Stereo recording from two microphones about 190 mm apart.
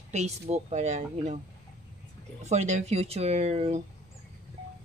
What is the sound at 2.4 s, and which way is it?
Speech, 35° right (ahead or behind).